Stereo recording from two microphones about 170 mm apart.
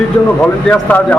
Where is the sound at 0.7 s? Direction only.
10° left (ahead or behind).